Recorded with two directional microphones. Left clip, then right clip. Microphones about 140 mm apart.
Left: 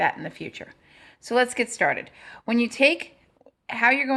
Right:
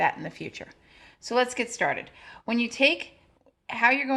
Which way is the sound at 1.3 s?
25° left (ahead or behind).